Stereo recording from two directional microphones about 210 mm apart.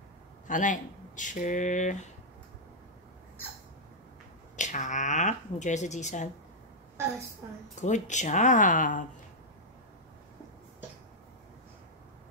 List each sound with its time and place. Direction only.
0.5 s speech: 35° left (ahead or behind)
4.6 s speech: 35° left (ahead or behind)
7.7 s speech: 35° left (ahead or behind)